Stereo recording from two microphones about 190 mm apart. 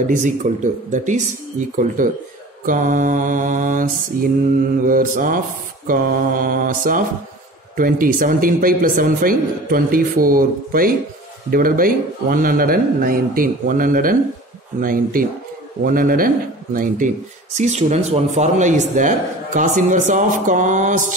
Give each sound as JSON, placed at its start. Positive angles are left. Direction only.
{"t": 0.0, "sound": "a man's voice", "side_deg": -40}